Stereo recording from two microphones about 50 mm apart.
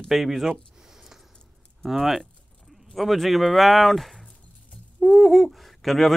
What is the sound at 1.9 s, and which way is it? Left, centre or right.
Speech, centre.